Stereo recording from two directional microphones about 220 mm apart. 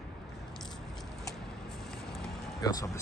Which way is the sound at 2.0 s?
Centre (ahead or behind).